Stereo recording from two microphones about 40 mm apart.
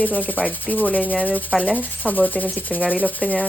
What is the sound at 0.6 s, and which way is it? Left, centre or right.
Speech, left.